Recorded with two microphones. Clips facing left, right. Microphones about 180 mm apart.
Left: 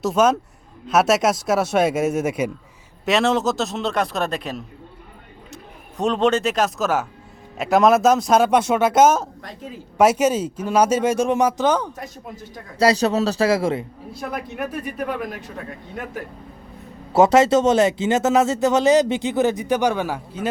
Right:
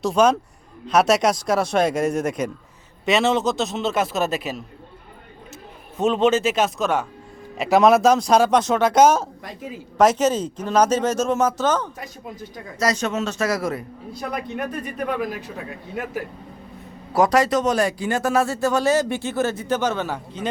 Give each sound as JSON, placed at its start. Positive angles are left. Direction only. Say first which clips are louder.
{"t": 0.0, "sound": "speech", "louder": "even", "side_deg": 0}
{"t": 6.0, "sound": "speech", "louder": "right 1 dB", "side_deg": 0}
{"t": 9.4, "sound": "a woman's voice", "louder": "right 1 dB", "side_deg": -10}
{"t": 10.0, "sound": "speech", "louder": "left 1 dB", "side_deg": 10}
{"t": 11.9, "sound": "speech", "louder": "even", "side_deg": 0}
{"t": 12.8, "sound": "a man's voice", "louder": "left 5 dB", "side_deg": 35}
{"t": 14.2, "sound": "speech", "louder": "even", "side_deg": 5}
{"t": 17.1, "sound": "speech", "louder": "left 4 dB", "side_deg": 25}